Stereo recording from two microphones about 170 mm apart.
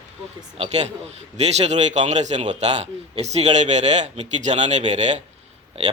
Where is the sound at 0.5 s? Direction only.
40° right (ahead or behind).